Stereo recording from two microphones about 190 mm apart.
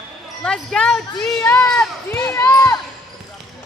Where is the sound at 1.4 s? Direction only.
15° left (ahead or behind).